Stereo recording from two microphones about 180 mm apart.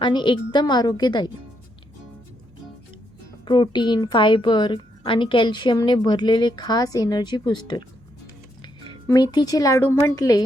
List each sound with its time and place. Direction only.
0.0 s a woman's voice: 25° left (ahead or behind)
3.4 s a woman's voice: 25° left (ahead or behind)